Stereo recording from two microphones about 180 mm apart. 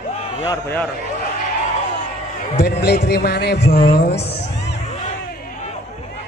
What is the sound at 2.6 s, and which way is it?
A man's voice, 65° left (ahead or behind).